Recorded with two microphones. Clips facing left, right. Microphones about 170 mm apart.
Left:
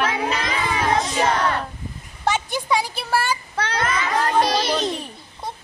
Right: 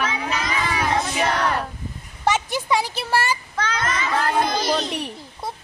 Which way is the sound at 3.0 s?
5° right (ahead or behind).